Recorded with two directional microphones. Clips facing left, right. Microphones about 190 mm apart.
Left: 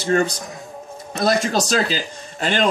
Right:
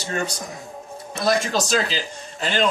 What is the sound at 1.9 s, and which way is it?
Speech, 45° left (ahead or behind).